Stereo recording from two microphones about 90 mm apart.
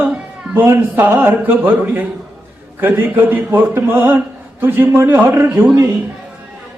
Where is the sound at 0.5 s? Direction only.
35° right (ahead or behind).